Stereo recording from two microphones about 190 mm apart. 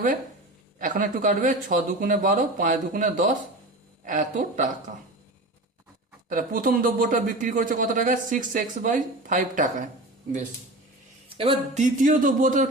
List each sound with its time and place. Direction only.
0.8 s a man's voice: 45° right (ahead or behind)
6.2 s a man's voice: 45° right (ahead or behind)
11.3 s a man's voice: 35° right (ahead or behind)